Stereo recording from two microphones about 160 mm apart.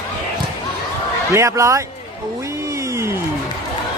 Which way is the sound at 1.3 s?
20° right (ahead or behind).